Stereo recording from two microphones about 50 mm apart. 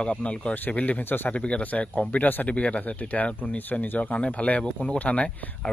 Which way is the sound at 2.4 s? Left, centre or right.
Left.